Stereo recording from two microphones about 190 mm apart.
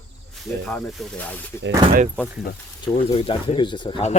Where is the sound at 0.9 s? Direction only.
5° left (ahead or behind).